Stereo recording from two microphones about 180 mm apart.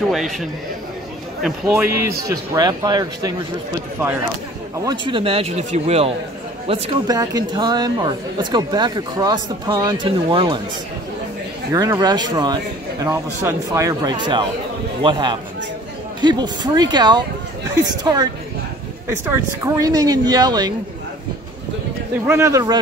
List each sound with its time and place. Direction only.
0.1 s a man's voice: centre (ahead or behind)
2.0 s speech: 15° right (ahead or behind)
4.8 s speech: 30° right (ahead or behind)
11.7 s speech: 20° right (ahead or behind)
19.3 s speech: 20° right (ahead or behind)
22.2 s speech: 10° right (ahead or behind)
22.5 s speech: 20° right (ahead or behind)